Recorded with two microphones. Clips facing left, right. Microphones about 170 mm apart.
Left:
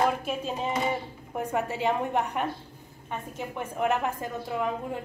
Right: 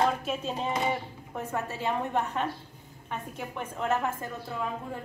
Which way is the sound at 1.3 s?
15° left (ahead or behind).